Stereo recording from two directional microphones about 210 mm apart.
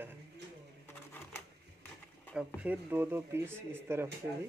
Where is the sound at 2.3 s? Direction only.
5° right (ahead or behind).